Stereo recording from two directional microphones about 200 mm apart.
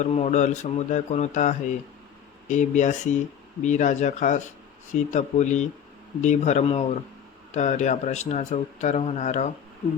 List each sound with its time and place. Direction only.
0.0 s a man's voice: 35° left (ahead or behind)